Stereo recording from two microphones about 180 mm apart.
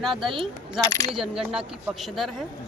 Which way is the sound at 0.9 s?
20° left (ahead or behind).